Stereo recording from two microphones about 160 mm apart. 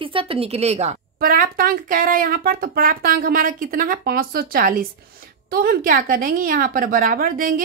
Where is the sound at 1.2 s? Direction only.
60° right (ahead or behind).